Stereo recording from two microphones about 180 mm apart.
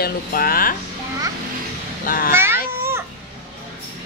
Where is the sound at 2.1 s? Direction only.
50° left (ahead or behind).